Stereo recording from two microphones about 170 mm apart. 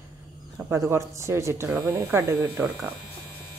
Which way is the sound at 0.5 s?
10° right (ahead or behind).